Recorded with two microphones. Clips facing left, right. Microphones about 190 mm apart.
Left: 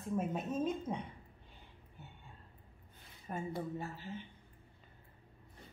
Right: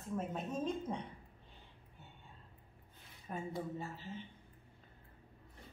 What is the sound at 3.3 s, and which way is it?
Speech, 5° left (ahead or behind).